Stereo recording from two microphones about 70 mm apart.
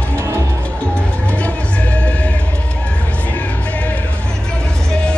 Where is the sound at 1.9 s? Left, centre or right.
Centre.